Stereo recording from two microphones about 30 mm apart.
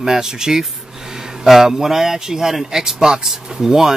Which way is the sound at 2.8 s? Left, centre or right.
Right.